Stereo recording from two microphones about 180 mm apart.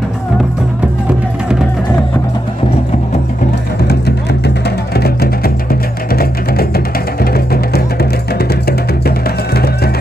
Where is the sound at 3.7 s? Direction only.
65° left (ahead or behind).